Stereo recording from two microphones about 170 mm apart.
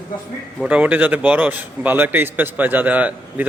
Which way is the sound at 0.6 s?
10° right (ahead or behind).